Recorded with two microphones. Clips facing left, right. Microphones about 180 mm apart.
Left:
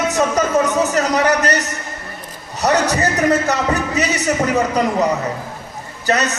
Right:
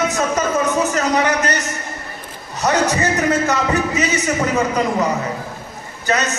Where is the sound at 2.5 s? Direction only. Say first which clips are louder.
Left 1 dB; 35° left (ahead or behind).